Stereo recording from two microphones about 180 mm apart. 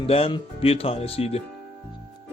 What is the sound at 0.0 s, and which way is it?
Speech, 30° left (ahead or behind).